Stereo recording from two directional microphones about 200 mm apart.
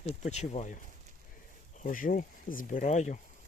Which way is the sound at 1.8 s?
45° left (ahead or behind).